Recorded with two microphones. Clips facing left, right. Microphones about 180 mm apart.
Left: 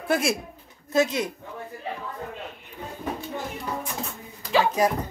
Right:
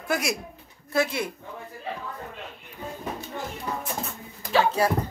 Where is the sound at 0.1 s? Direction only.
30° left (ahead or behind).